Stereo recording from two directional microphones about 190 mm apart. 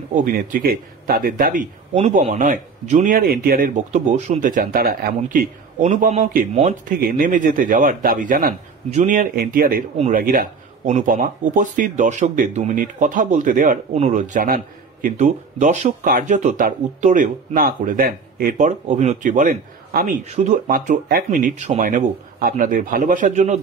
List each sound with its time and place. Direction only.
0.1 s speech: 50° right (ahead or behind)